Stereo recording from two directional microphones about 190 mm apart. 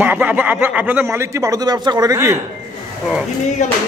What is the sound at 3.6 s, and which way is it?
Music, 40° left (ahead or behind).